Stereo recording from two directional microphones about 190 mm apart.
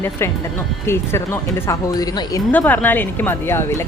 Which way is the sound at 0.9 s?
15° left (ahead or behind).